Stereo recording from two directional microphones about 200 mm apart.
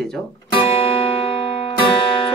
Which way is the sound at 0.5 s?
25° left (ahead or behind).